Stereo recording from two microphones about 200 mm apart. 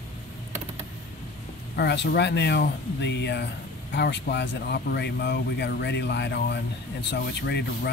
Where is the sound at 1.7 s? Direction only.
55° left (ahead or behind).